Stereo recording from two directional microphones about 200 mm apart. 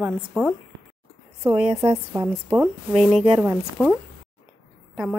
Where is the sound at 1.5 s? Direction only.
30° right (ahead or behind).